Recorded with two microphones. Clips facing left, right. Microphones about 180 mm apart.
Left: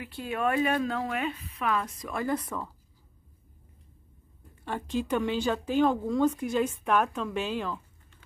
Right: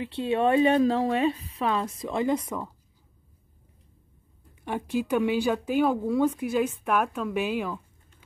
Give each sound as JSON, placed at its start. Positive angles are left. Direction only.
{"t": 0.0, "sound": "a woman's voice", "side_deg": -30}
{"t": 4.6, "sound": "speech", "side_deg": -10}